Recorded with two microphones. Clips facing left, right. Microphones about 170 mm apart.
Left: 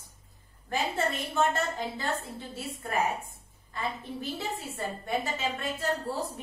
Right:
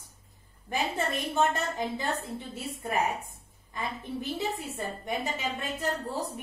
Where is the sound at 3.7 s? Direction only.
20° right (ahead or behind).